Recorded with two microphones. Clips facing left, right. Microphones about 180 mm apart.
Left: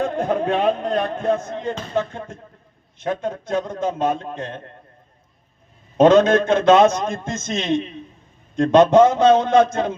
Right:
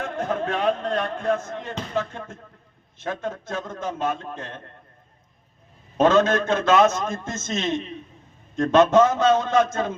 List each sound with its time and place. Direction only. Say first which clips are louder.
0.0 s a man's voice: left 5 dB; 15° left (ahead or behind)
6.0 s a man's voice: left 5 dB; 20° left (ahead or behind)